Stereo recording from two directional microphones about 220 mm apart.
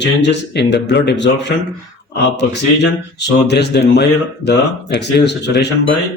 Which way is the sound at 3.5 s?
50° left (ahead or behind).